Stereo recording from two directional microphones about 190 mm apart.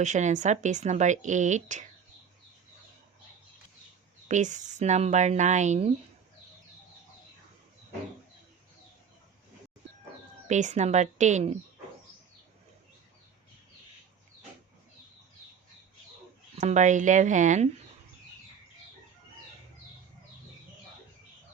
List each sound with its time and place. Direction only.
0.0 s speech: 40° right (ahead or behind)
4.3 s speech: 40° right (ahead or behind)
10.5 s speech: 40° right (ahead or behind)
16.6 s speech: 40° right (ahead or behind)